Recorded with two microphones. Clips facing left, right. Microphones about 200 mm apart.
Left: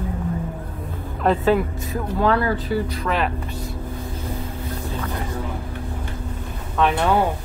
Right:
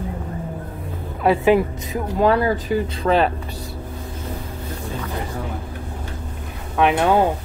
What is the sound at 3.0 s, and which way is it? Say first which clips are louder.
Speech: right 6 dB; 30° right (ahead or behind).